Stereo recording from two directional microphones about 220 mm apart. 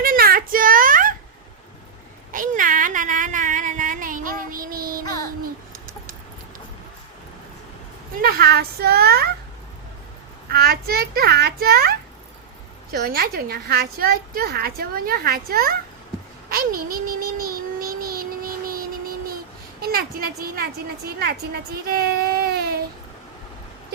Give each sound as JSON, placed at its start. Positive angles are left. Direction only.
{"t": 0.0, "sound": "child singing", "side_deg": -40}
{"t": 2.3, "sound": "a sound", "side_deg": -35}
{"t": 8.2, "sound": "a sound", "side_deg": -45}
{"t": 10.5, "sound": "a child's voice", "side_deg": -45}
{"t": 16.5, "sound": "child singing", "side_deg": -45}
{"t": 19.8, "sound": "a woman's voice", "side_deg": -45}